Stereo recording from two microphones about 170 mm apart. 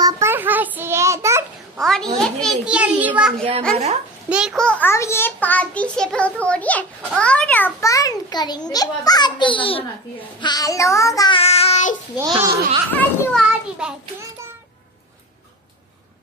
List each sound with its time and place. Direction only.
0.0 s child singing: 15° right (ahead or behind)
1.8 s a child's voice: 5° left (ahead or behind)
3.7 s speech: 40° right (ahead or behind)
4.3 s a child's voice: 5° right (ahead or behind); by 9.8 s 30° left (ahead or behind)
10.4 s child singing: 20° left (ahead or behind)
11.3 s child singing: 35° left (ahead or behind)
12.2 s speech: 20° right (ahead or behind)
12.9 s a child's voice: 10° left (ahead or behind)
13.5 s a sound: 5° right (ahead or behind)